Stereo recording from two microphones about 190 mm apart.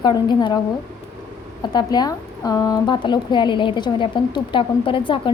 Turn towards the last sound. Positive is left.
turn(degrees=25)  # may be behind; listen again after turning